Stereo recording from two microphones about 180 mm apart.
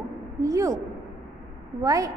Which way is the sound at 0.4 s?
20° right (ahead or behind).